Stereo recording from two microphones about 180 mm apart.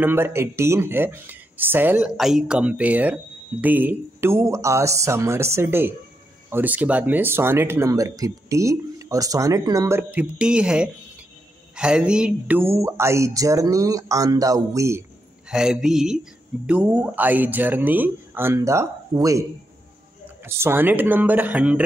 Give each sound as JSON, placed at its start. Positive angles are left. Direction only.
{"t": 0.0, "sound": "speech", "side_deg": -10}
{"t": 15.5, "sound": "speech", "side_deg": -5}
{"t": 20.4, "sound": "speech", "side_deg": -10}